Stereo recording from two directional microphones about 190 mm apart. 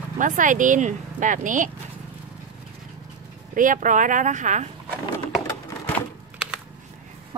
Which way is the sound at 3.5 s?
45° right (ahead or behind).